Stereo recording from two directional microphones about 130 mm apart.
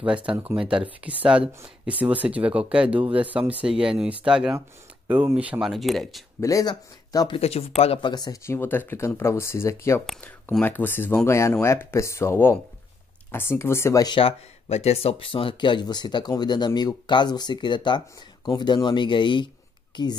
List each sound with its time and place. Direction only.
0.0 s speech: 10° right (ahead or behind)
6.4 s speech: 30° left (ahead or behind)
7.3 s speech: 50° left (ahead or behind)
8.1 s speech: 30° left (ahead or behind)
8.5 s speech: 15° left (ahead or behind)
14.0 s a woman's voice: 45° left (ahead or behind)